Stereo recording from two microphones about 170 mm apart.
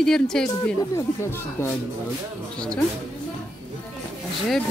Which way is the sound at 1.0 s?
15° left (ahead or behind).